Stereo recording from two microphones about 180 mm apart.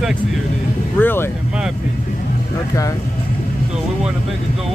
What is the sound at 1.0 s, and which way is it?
Speech, 10° left (ahead or behind).